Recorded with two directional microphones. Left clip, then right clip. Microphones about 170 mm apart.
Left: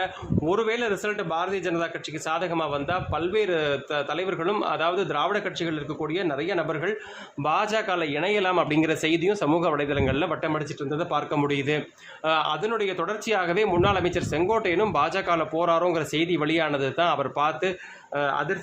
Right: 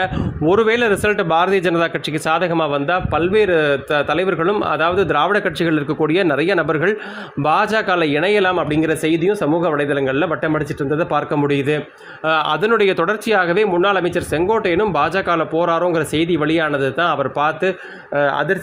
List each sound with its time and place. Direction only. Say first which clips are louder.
0.0 s speech: right 8 dB; 25° right (ahead or behind)
8.5 s a man's voice: right 5 dB; 10° right (ahead or behind)
12.6 s speech: right 11 dB; 35° right (ahead or behind)